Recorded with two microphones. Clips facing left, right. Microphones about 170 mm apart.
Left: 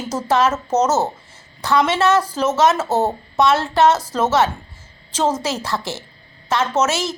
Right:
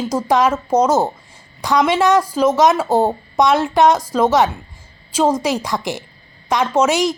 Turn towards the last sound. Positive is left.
turn(degrees=-15)  # may be behind; listen again after turning